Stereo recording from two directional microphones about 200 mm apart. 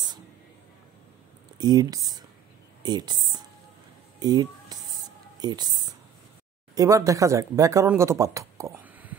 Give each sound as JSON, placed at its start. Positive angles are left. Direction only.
{"t": 1.6, "sound": "speech", "side_deg": -20}
{"t": 4.2, "sound": "a sound", "side_deg": -20}
{"t": 5.4, "sound": "speech", "side_deg": -20}